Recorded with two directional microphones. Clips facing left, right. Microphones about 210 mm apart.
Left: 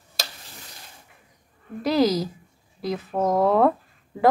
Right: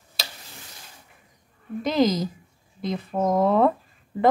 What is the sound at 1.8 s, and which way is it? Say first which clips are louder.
Speech: left 1 dB; centre (ahead or behind).